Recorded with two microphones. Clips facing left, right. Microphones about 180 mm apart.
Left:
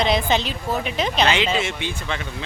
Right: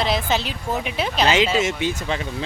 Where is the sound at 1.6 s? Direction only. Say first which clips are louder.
Right 5 dB; 40° right (ahead or behind).